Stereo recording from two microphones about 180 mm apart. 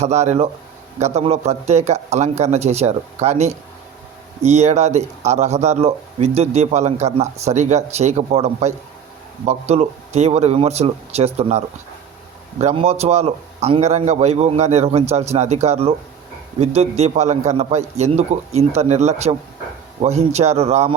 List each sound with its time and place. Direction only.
0.0 s speech: 40° right (ahead or behind)